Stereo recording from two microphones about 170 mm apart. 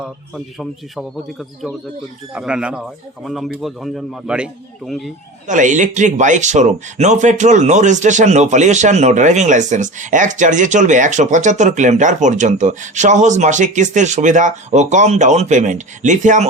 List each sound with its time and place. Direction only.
0.3 s a man's voice: centre (ahead or behind)
5.5 s speech: 45° right (ahead or behind)